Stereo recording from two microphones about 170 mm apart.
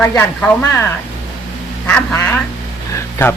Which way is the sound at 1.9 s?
5° left (ahead or behind).